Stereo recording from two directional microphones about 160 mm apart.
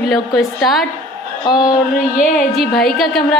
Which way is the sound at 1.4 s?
25° left (ahead or behind).